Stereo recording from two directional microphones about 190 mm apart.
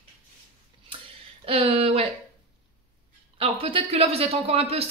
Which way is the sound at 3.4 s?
30° right (ahead or behind).